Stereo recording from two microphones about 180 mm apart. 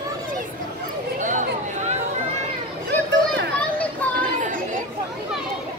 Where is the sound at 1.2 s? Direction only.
45° right (ahead or behind).